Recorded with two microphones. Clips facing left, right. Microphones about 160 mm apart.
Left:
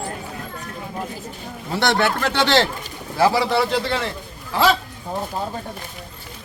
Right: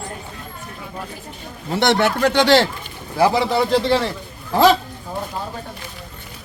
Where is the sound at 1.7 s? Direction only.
20° right (ahead or behind).